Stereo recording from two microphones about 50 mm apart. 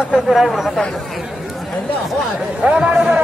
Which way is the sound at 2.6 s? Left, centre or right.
Right.